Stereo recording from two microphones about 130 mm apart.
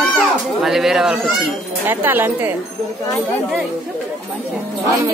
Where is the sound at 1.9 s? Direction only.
15° right (ahead or behind).